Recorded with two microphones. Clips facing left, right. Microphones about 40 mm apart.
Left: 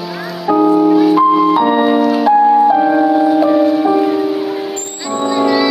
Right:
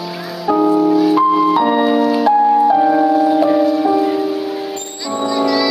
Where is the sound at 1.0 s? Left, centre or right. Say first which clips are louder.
Left 2 dB; centre.